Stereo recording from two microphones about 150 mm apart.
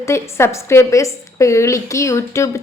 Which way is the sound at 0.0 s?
20° left (ahead or behind).